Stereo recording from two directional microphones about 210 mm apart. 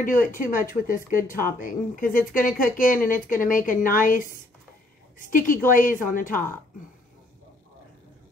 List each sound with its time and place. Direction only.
0.0 s speech: 40° left (ahead or behind)
5.3 s speech: 40° left (ahead or behind)